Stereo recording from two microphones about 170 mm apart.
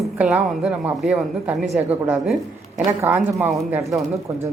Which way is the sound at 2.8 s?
15° right (ahead or behind).